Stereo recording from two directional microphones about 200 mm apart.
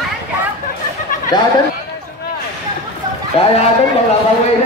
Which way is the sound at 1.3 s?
20° left (ahead or behind).